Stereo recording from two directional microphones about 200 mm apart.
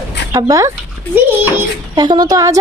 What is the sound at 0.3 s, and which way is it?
Speech, 15° right (ahead or behind).